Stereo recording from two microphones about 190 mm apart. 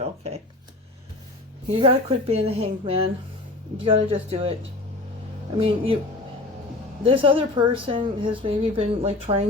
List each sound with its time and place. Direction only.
1.7 s a woman's voice: 30° right (ahead or behind)
5.5 s speech: 30° right (ahead or behind)
7.0 s speech: 30° right (ahead or behind)